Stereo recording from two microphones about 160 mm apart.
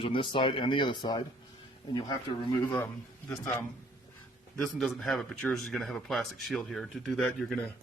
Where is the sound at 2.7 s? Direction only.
15° left (ahead or behind).